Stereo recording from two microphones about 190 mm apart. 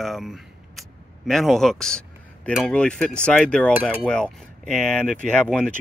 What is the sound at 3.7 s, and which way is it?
Cutlery, 10° right (ahead or behind).